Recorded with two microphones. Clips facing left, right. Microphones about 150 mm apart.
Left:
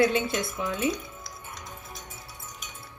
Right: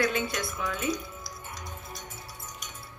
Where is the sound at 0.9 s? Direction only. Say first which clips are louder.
Right 1 dB; centre (ahead or behind).